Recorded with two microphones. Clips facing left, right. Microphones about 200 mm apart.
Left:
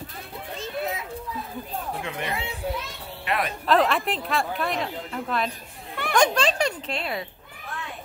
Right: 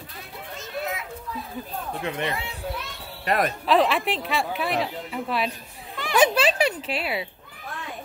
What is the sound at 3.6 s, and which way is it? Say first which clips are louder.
A woman's voice: left 1 dB; centre (ahead or behind).